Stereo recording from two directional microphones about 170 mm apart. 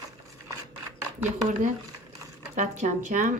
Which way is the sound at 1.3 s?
45° right (ahead or behind).